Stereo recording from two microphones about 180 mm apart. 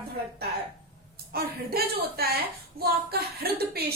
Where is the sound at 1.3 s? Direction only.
60° right (ahead or behind).